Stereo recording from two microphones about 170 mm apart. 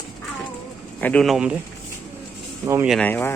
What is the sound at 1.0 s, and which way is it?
Speech, 5° left (ahead or behind).